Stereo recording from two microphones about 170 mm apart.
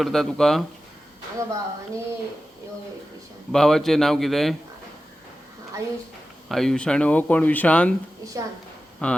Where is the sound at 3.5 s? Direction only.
5° left (ahead or behind).